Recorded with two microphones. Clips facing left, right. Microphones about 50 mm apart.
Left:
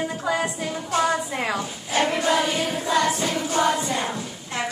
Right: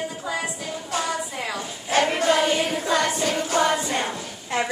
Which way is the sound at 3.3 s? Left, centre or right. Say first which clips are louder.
Even; right.